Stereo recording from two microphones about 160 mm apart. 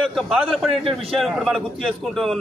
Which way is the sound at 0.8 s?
35° right (ahead or behind).